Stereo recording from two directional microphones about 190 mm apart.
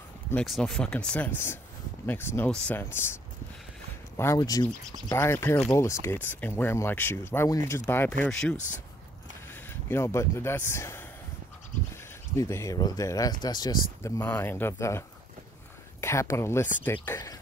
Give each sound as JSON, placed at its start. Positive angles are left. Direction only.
{"t": 0.3, "sound": "speech", "side_deg": 5}
{"t": 4.2, "sound": "speech", "side_deg": 15}